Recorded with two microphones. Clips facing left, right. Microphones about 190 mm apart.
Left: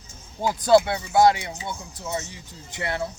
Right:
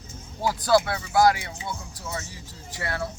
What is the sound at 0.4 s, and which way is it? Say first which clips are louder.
Speech: left 4 dB; 20° left (ahead or behind).